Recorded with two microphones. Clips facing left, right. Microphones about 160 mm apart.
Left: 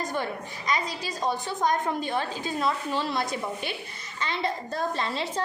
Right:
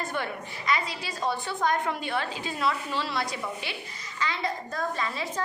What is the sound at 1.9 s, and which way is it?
A woman's voice, 40° left (ahead or behind).